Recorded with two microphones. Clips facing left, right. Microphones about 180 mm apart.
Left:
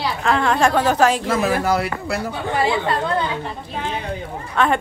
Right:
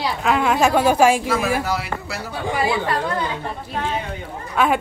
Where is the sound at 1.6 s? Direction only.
50° left (ahead or behind).